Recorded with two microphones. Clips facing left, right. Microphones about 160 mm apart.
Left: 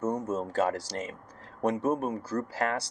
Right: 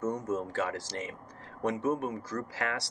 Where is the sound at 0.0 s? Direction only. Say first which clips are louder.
Left 2 dB; 35° left (ahead or behind).